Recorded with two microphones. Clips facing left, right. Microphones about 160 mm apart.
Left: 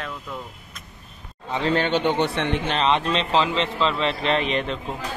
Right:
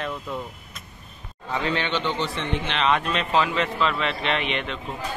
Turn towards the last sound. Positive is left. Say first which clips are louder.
# left 4 dB
turn(degrees=35)  # may be behind; listen again after turning